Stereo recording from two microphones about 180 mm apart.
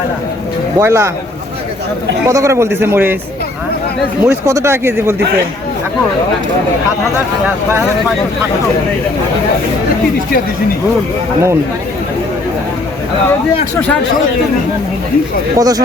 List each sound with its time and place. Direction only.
0.8 s speech: 15° right (ahead or behind)
2.2 s speech: 15° right (ahead or behind)
4.2 s speech: 15° right (ahead or behind)
7.4 s speech: 10° right (ahead or behind)
15.5 s speech: 20° right (ahead or behind)